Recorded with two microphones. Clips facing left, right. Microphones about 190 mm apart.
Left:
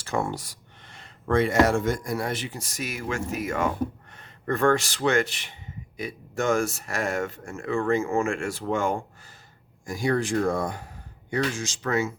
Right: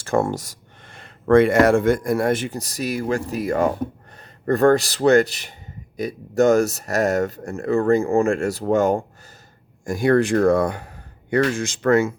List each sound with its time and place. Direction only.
0.0 s a man's voice: 45° right (ahead or behind)
9.8 s speech: 55° right (ahead or behind)